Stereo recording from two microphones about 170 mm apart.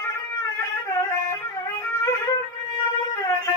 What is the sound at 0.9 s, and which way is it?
Music, 15° left (ahead or behind).